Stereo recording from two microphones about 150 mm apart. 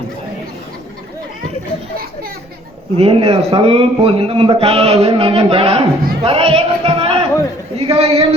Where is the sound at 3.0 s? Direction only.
40° right (ahead or behind).